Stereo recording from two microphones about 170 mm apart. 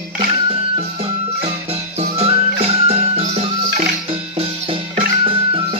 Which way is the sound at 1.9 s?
35° right (ahead or behind).